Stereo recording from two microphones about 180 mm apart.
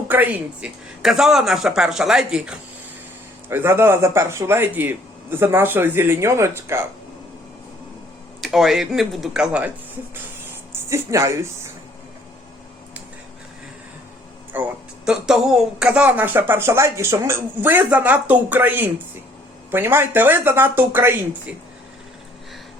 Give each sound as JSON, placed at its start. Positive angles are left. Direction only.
{"t": 0.1, "sound": "speech", "side_deg": -10}
{"t": 8.4, "sound": "speech", "side_deg": 0}
{"t": 10.8, "sound": "speech", "side_deg": -15}
{"t": 14.5, "sound": "speech", "side_deg": -5}